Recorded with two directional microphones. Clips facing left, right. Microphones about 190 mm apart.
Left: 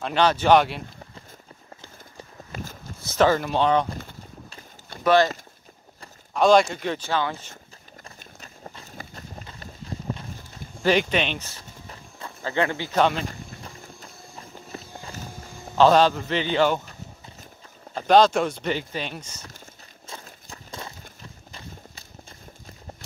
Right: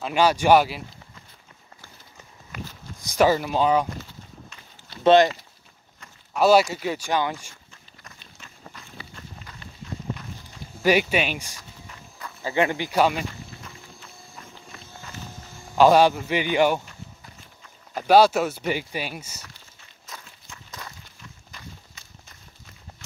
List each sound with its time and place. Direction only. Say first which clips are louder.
0.0 s speech: right 1 dB; 10° right (ahead or behind)
2.5 s a sound: left 1 dB; 30° left (ahead or behind)
3.0 s speech: even; 15° right (ahead or behind)
5.0 s speech: right 3 dB; 20° right (ahead or behind)
6.3 s speech: even; 5° right (ahead or behind)
8.7 s run: left 2 dB; 40° left (ahead or behind)
9.6 s clip-clop: even; 35° left (ahead or behind)
10.8 s speech: right 1 dB; 10° right (ahead or behind)
13.3 s a sound: left 2 dB; 40° left (ahead or behind)
14.7 s walk: left 12 dB; 35° left (ahead or behind)
15.8 s speech: right 1 dB; 10° right (ahead or behind)
17.9 s speech: right 1 dB; 10° right (ahead or behind)
20.2 s a sound: left 4 dB; 35° left (ahead or behind)
21.2 s walk: right 1 dB; 30° left (ahead or behind)